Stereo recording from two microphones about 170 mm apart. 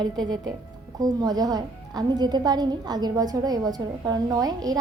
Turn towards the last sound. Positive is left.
turn(degrees=-20)  # may be behind; listen again after turning